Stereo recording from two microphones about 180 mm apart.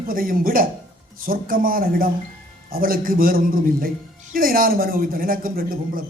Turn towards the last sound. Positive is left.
turn(degrees=-50)  # may be behind; listen again after turning